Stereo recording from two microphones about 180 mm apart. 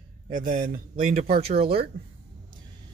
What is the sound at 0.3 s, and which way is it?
Speech, 50° right (ahead or behind).